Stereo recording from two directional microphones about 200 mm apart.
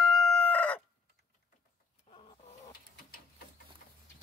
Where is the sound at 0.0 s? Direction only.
Centre (ahead or behind).